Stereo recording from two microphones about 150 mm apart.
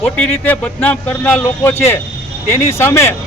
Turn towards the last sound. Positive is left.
turn(degrees=15)  # may be behind; listen again after turning